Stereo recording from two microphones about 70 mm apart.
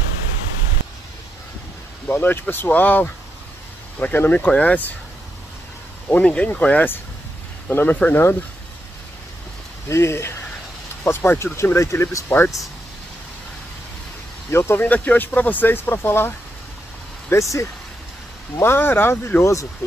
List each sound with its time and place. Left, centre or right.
2.0 s speech: left
6.0 s speech: centre
9.8 s speech: left
14.5 s speech: left
14.8 s speech: left
17.4 s speech: left
18.6 s speech: left